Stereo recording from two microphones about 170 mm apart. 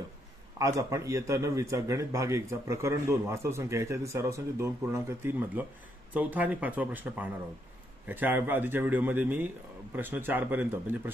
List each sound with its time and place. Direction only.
0.6 s a man's voice: 20° right (ahead or behind)